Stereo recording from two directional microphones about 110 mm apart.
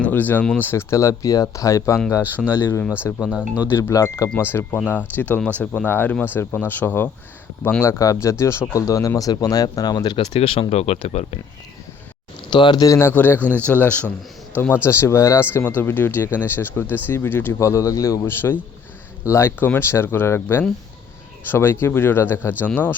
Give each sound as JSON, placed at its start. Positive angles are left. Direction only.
{"t": 0.0, "sound": "speech", "side_deg": 15}
{"t": 3.3, "sound": "speech", "side_deg": -15}
{"t": 3.7, "sound": "speech", "side_deg": 20}
{"t": 10.2, "sound": "speech", "side_deg": 60}
{"t": 12.5, "sound": "speech", "side_deg": 45}